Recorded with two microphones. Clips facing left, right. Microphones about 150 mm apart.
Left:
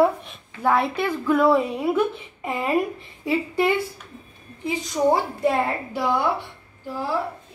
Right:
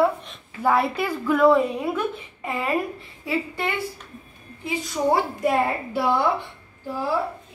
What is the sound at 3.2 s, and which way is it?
Speech, 15° left (ahead or behind).